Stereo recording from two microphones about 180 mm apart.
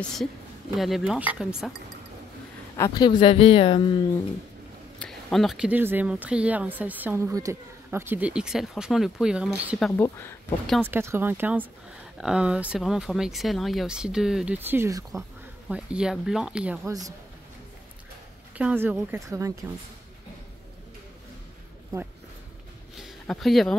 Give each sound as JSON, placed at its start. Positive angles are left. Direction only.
{"t": 0.7, "sound": "speech", "side_deg": 0}
{"t": 2.8, "sound": "speech", "side_deg": 20}
{"t": 4.9, "sound": "speech", "side_deg": 5}
{"t": 10.8, "sound": "speech", "side_deg": -10}
{"t": 15.7, "sound": "speech", "side_deg": -5}
{"t": 18.6, "sound": "speech", "side_deg": -10}
{"t": 22.9, "sound": "a sound", "side_deg": 0}